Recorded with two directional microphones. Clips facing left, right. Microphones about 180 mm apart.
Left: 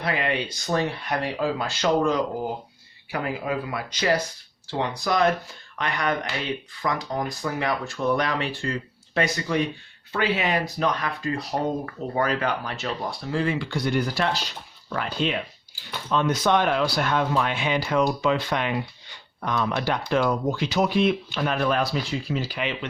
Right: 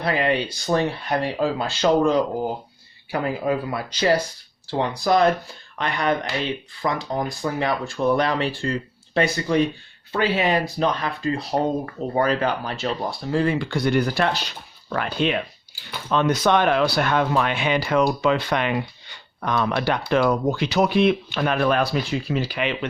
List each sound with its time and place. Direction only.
0.0 s speech: 35° right (ahead or behind)
13.7 s speech: 65° right (ahead or behind)